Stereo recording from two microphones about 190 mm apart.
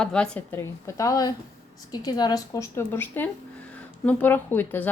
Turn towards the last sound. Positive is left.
turn(degrees=10)  # may be behind; listen again after turning